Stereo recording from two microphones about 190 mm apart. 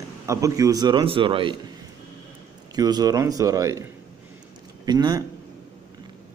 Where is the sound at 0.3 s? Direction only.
15° right (ahead or behind).